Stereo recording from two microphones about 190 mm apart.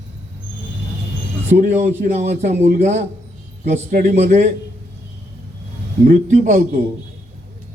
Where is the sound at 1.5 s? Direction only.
40° right (ahead or behind).